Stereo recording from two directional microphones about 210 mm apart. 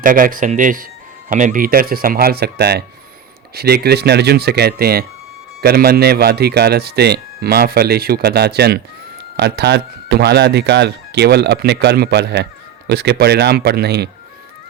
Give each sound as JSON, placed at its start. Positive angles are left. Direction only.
{"t": 0.0, "sound": "speech", "side_deg": -40}